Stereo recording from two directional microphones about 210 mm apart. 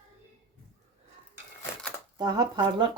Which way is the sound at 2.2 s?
20° right (ahead or behind).